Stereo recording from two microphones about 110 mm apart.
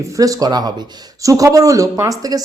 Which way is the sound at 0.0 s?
30° right (ahead or behind).